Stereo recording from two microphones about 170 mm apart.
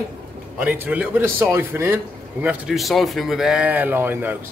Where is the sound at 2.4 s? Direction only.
Centre (ahead or behind).